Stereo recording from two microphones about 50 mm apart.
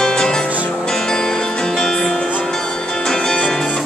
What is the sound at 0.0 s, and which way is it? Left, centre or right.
Music, centre.